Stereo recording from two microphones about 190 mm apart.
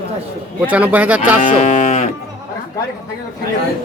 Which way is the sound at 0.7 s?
5° right (ahead or behind).